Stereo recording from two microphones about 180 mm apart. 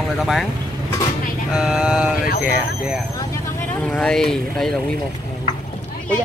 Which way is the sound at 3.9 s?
5° left (ahead or behind).